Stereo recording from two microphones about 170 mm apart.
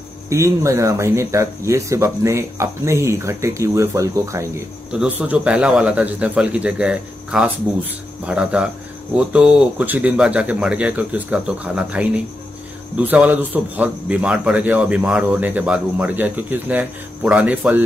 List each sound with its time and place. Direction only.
0.3 s a man's voice: 15° right (ahead or behind)
4.9 s a man's voice: 5° right (ahead or behind)